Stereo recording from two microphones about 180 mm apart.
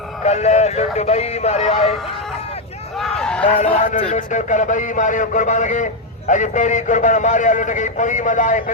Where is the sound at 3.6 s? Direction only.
45° left (ahead or behind).